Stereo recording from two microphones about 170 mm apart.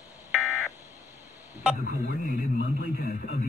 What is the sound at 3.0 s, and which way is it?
Radio, 55° left (ahead or behind).